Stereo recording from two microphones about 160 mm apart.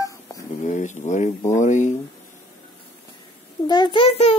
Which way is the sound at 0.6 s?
50° left (ahead or behind).